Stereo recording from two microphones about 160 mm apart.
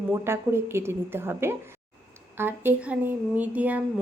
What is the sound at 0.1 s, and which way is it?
A woman's voice, 15° right (ahead or behind).